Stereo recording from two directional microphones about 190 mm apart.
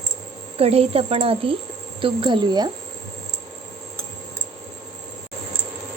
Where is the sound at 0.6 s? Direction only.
30° right (ahead or behind).